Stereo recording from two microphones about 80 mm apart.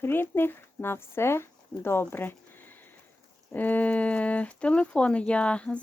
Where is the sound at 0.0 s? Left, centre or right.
Left.